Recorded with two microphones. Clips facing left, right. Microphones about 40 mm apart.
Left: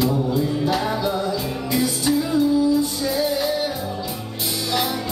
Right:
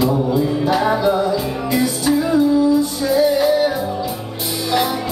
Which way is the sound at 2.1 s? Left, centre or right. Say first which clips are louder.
Right 4 dB; centre.